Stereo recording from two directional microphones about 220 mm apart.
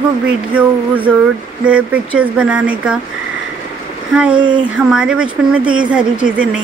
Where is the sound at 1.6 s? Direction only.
5° right (ahead or behind).